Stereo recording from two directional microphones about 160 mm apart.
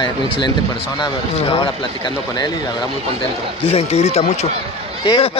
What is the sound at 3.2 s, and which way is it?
Speech, 40° left (ahead or behind).